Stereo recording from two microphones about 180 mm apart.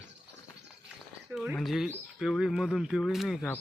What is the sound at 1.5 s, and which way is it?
Speech, centre (ahead or behind).